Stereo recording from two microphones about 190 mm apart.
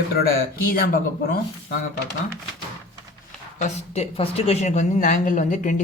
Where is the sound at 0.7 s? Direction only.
50° left (ahead or behind).